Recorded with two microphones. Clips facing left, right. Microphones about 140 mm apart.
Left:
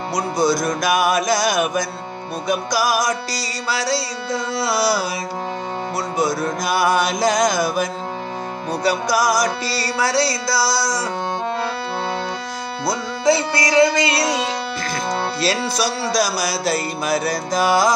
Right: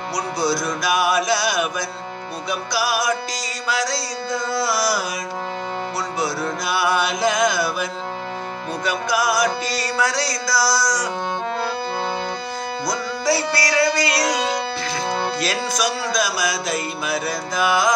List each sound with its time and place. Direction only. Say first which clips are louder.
0.1 s music: left 4 dB; 50° left (ahead or behind); by 5.0 s 25° left (ahead or behind)
6.1 s music: left 5 dB; 45° left (ahead or behind); by 11.1 s 25° left (ahead or behind)
12.8 s music: left 5 dB; 25° left (ahead or behind)
15.4 s music: left 2 dB; 30° left (ahead or behind)